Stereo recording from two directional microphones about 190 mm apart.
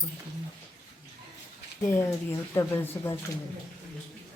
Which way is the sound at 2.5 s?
15° left (ahead or behind).